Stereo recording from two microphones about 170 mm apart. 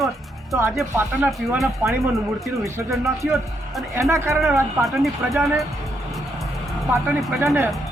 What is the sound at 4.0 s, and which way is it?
Speech, 15° right (ahead or behind).